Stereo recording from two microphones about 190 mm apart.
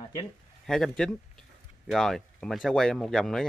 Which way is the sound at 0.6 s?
Centre (ahead or behind).